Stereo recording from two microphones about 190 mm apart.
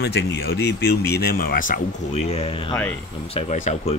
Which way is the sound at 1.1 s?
50° left (ahead or behind).